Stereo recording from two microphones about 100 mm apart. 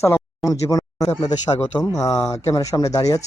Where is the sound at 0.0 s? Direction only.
30° left (ahead or behind).